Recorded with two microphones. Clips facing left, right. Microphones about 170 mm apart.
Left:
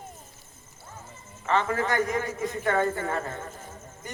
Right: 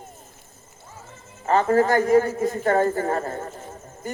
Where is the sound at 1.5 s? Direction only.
40° right (ahead or behind).